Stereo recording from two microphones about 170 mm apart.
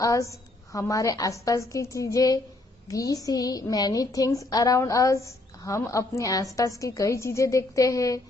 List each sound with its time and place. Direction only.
0.0 s a woman's voice: 20° left (ahead or behind)